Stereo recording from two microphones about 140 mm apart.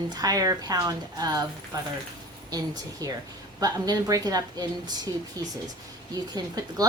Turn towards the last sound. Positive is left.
turn(degrees=-25)  # may be behind; listen again after turning